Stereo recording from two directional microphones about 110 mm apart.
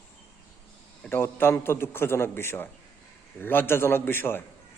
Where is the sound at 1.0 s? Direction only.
20° left (ahead or behind).